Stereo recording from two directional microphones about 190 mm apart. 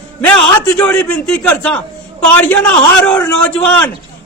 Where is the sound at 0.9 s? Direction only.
5° left (ahead or behind).